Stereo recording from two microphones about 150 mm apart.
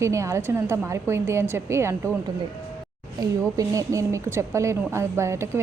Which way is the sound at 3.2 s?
25° right (ahead or behind).